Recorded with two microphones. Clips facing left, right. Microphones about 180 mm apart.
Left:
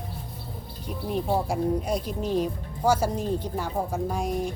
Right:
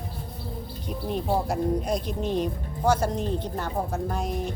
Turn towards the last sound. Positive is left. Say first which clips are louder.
# left 2 dB
turn(degrees=10)  # may be behind; listen again after turning